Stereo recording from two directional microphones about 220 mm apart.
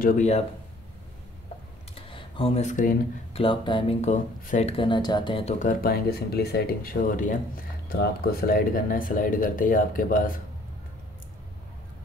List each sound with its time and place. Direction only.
0.0 s speech: 35° left (ahead or behind)
2.0 s computer keyboard: 25° left (ahead or behind)
3.3 s speech: 25° left (ahead or behind)
5.6 s speech: 40° left (ahead or behind)